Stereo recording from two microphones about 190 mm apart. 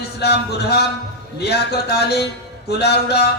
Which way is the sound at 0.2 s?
60° left (ahead or behind).